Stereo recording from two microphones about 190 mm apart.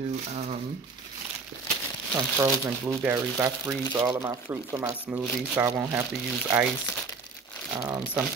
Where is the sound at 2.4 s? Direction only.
15° right (ahead or behind).